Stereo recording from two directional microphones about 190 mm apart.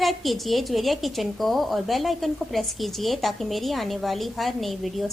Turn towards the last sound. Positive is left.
turn(degrees=0)  # may be behind; listen again after turning